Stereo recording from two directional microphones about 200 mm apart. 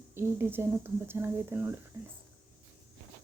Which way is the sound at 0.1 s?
10° right (ahead or behind).